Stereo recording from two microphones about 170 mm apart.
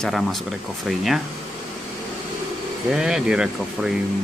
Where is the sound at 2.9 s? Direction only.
5° right (ahead or behind).